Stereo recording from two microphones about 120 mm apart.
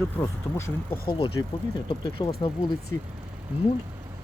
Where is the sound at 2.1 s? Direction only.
50° left (ahead or behind).